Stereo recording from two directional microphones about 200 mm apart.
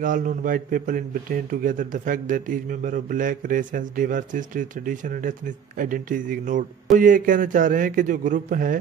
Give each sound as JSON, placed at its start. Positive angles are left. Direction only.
{"t": 0.0, "sound": "a man's voice", "side_deg": -40}